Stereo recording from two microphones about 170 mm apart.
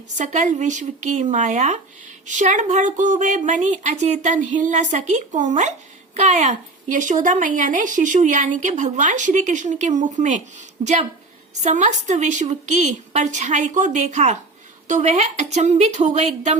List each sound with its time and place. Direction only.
0.2 s a woman's voice: 45° right (ahead or behind)